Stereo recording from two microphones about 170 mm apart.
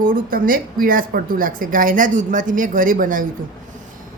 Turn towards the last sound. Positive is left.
turn(degrees=-55)  # may be behind; listen again after turning